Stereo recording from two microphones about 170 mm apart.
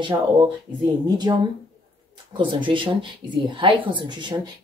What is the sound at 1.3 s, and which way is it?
Speech, 25° right (ahead or behind).